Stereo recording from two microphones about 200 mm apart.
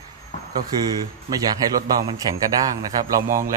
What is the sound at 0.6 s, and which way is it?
A man's voice, 20° right (ahead or behind).